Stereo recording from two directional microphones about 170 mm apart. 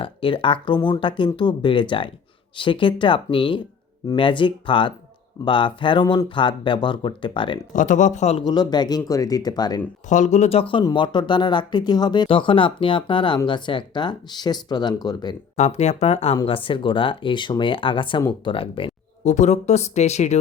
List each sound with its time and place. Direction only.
0.0 s speech: 30° left (ahead or behind)
7.8 s speech: 45° left (ahead or behind)
8.4 s speech: 25° left (ahead or behind)
10.1 s speech: 45° left (ahead or behind); by 15.4 s 25° left (ahead or behind)
15.5 s speech: 40° left (ahead or behind)